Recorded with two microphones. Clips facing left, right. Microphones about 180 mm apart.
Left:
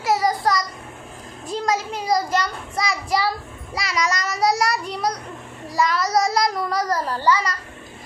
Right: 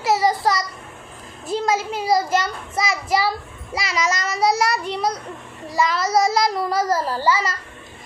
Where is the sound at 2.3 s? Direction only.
25° right (ahead or behind).